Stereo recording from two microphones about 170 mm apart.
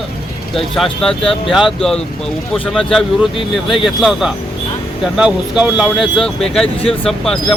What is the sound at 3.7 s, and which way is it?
Speech, centre (ahead or behind).